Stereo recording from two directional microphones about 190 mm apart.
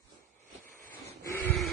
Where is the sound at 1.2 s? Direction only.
15° left (ahead or behind).